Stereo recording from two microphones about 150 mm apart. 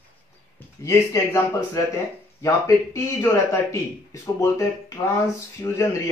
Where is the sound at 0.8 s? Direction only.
20° left (ahead or behind).